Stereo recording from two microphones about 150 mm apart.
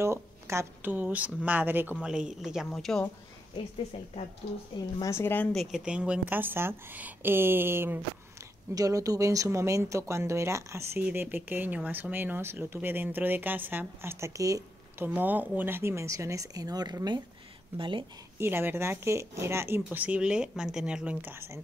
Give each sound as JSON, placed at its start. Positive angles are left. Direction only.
{"t": 0.0, "sound": "speech", "side_deg": -20}
{"t": 3.9, "sound": "a woman's voice", "side_deg": 40}
{"t": 5.0, "sound": "speech", "side_deg": 15}
{"t": 15.0, "sound": "speech", "side_deg": -10}
{"t": 18.4, "sound": "speech", "side_deg": -15}